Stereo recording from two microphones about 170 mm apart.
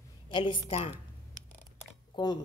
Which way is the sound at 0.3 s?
30° left (ahead or behind).